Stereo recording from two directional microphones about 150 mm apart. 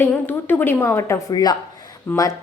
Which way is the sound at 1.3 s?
25° left (ahead or behind).